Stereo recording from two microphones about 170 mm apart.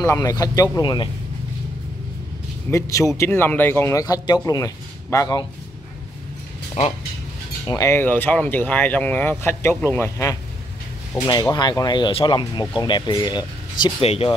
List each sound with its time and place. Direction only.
0.0 s speech: 20° left (ahead or behind)
2.7 s speech: 20° left (ahead or behind)
7.6 s speech: 20° left (ahead or behind)
14.0 s speech: 35° left (ahead or behind)